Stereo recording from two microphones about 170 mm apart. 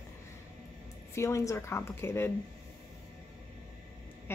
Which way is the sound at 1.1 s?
15° left (ahead or behind).